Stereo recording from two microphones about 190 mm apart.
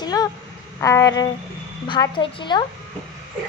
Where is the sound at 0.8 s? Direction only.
15° left (ahead or behind).